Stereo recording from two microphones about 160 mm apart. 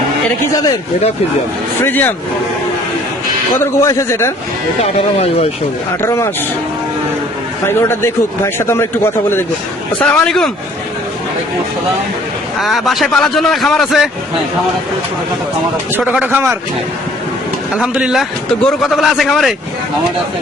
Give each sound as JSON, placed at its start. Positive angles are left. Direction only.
{"t": 0.5, "sound": "speech", "side_deg": 25}
{"t": 1.8, "sound": "a man's voice", "side_deg": 10}
{"t": 3.6, "sound": "a man's voice", "side_deg": 20}
{"t": 4.8, "sound": "speech", "side_deg": 40}
{"t": 6.0, "sound": "a man's voice", "side_deg": 15}
{"t": 7.7, "sound": "a man's voice", "side_deg": 15}
{"t": 12.5, "sound": "a man's voice", "side_deg": 0}
{"t": 16.1, "sound": "a man's voice", "side_deg": -10}
{"t": 17.7, "sound": "a man's voice", "side_deg": -5}